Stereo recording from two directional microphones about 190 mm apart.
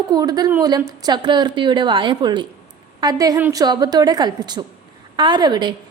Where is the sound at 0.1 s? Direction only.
20° right (ahead or behind).